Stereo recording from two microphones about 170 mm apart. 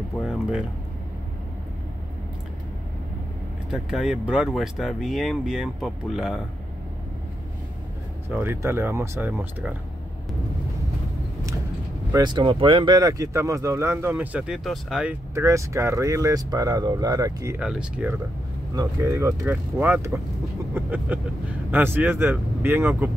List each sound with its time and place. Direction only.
0.3 s speech: 5° right (ahead or behind)
3.7 s speech: centre (ahead or behind)
8.3 s speech: 15° right (ahead or behind)
12.1 s speech: 25° right (ahead or behind); by 15.1 s 5° right (ahead or behind)
15.3 s speech: 15° right (ahead or behind)
17.6 s speech: 5° right (ahead or behind)
18.8 s speech: 20° right (ahead or behind)